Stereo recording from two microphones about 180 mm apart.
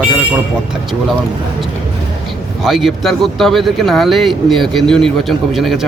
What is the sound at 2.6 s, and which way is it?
Speech, centre (ahead or behind).